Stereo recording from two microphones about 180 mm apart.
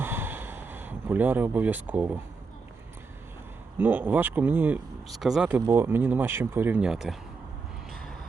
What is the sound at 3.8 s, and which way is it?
Speech, 10° right (ahead or behind).